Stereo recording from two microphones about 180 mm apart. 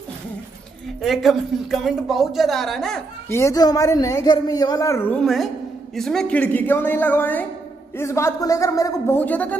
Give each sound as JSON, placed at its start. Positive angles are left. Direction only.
{"t": 1.0, "sound": "a woman's voice", "side_deg": 0}
{"t": 3.3, "sound": "a man's voice", "side_deg": 15}